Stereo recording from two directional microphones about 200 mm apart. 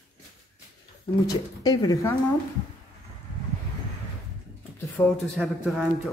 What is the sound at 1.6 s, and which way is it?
Speech, 20° left (ahead or behind).